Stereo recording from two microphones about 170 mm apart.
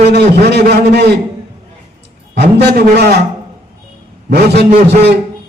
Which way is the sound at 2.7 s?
70° right (ahead or behind).